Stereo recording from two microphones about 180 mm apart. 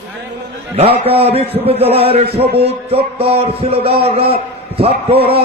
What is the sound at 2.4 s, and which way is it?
Speech, 65° right (ahead or behind).